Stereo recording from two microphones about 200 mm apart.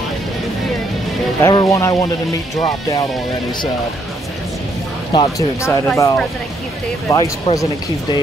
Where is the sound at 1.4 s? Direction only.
15° left (ahead or behind).